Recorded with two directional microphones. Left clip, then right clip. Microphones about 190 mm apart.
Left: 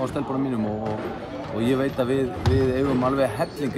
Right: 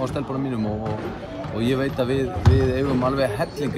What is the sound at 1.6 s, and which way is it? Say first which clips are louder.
Speech: even; 10° left (ahead or behind).